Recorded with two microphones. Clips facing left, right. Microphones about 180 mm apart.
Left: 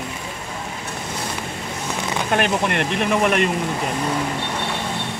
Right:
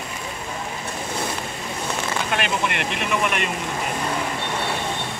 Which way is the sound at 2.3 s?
45° left (ahead or behind).